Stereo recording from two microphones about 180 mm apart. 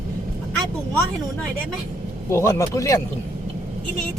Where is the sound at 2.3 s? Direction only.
15° left (ahead or behind).